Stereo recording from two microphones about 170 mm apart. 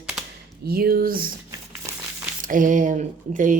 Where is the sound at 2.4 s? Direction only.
50° right (ahead or behind).